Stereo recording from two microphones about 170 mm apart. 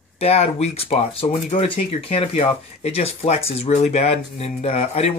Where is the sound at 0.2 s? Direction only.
40° left (ahead or behind).